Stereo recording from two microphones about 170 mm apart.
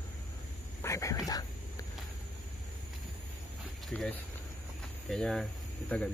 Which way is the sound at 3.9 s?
5° left (ahead or behind).